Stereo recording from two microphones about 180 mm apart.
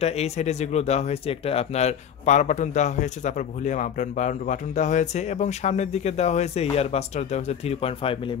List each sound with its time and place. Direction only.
0.0 s speech: 35° left (ahead or behind)